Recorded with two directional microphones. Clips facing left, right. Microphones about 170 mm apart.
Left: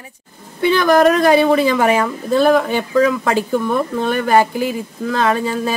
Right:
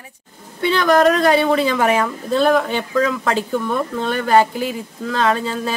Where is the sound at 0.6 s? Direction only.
10° left (ahead or behind).